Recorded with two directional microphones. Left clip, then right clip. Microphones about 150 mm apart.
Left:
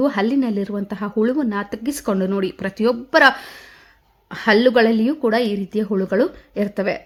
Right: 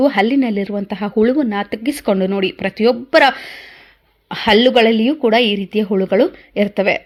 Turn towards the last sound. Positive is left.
turn(degrees=-15)  # may be behind; listen again after turning